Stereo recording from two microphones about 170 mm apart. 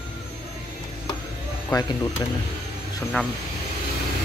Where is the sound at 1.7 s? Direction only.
20° left (ahead or behind).